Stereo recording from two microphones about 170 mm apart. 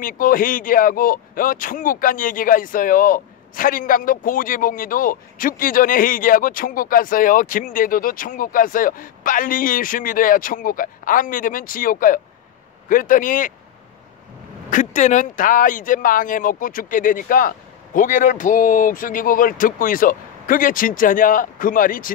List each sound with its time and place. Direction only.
0.0 s speech: 55° left (ahead or behind)
14.7 s speech: 45° left (ahead or behind)